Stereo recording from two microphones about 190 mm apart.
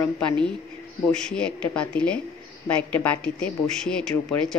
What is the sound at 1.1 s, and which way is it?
A man's voice, 5° left (ahead or behind).